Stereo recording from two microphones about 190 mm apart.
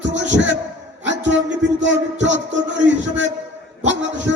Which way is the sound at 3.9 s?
75° right (ahead or behind).